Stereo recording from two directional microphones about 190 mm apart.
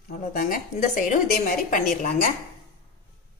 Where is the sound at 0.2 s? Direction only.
45° left (ahead or behind).